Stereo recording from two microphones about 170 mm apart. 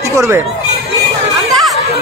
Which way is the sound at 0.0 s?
20° right (ahead or behind).